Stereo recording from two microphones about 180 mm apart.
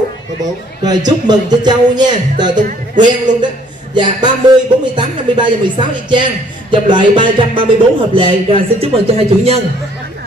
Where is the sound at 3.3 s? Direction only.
45° right (ahead or behind).